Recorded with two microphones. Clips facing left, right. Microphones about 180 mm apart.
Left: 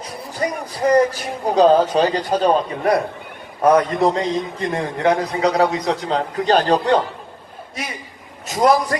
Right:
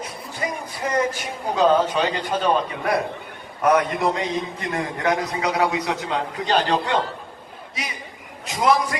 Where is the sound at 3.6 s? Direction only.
30° left (ahead or behind).